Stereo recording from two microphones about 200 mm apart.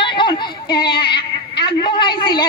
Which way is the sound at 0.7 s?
25° left (ahead or behind).